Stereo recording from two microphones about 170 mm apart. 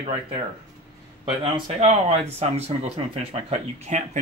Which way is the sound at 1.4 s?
35° right (ahead or behind).